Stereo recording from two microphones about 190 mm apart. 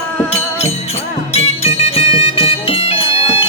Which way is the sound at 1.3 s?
35° left (ahead or behind).